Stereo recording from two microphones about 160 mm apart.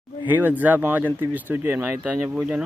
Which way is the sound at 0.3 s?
10° right (ahead or behind).